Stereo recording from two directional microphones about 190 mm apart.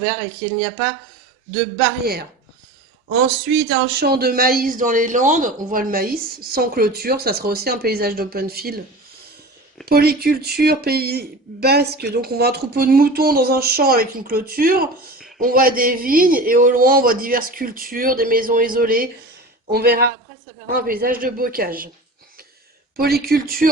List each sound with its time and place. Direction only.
3.2 s a man's voice: 60° right (ahead or behind)
9.8 s a man's voice: 55° right (ahead or behind)
23.0 s a man's voice: 55° right (ahead or behind)